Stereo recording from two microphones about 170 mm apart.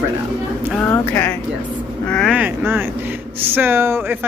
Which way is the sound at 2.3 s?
10° right (ahead or behind).